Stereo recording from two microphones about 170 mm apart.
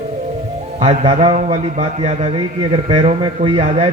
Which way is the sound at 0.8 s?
35° right (ahead or behind).